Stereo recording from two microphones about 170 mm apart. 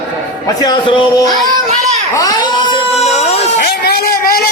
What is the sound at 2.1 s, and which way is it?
Baby cry, 20° left (ahead or behind).